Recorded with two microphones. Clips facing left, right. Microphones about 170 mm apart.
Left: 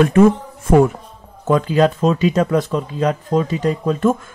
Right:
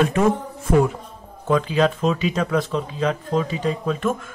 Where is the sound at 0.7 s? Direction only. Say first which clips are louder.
Left 5 dB; 50° left (ahead or behind).